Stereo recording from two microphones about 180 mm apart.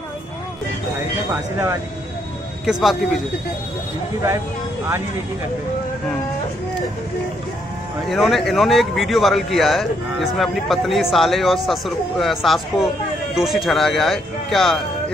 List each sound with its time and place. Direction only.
1.3 s speech: 15° right (ahead or behind)
2.6 s speech: centre (ahead or behind)
8.1 s speech: centre (ahead or behind)